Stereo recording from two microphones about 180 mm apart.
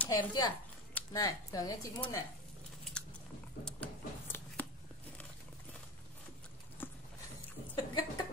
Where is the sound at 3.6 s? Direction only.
5° left (ahead or behind).